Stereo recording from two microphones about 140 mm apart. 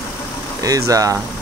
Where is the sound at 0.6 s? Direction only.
25° right (ahead or behind).